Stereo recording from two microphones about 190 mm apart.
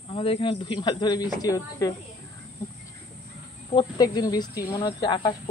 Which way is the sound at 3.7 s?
25° left (ahead or behind).